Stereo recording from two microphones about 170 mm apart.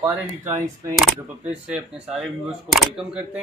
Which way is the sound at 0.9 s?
5° right (ahead or behind).